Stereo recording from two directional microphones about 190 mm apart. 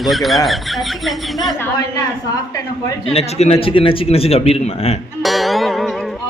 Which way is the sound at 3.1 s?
35° left (ahead or behind).